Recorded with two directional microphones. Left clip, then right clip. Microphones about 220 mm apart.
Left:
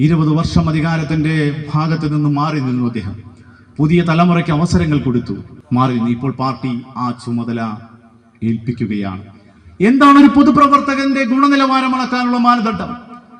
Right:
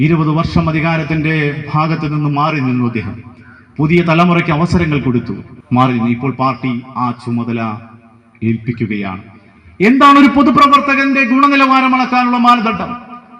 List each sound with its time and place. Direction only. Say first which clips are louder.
0.0 s a man's voice: right 2 dB; 25° right (ahead or behind)